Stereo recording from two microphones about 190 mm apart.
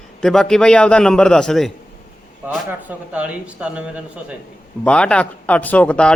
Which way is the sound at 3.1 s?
5° right (ahead or behind).